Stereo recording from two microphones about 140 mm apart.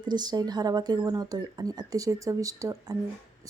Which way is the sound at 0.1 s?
30° right (ahead or behind).